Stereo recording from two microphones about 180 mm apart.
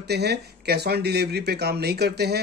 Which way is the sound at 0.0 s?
65° right (ahead or behind).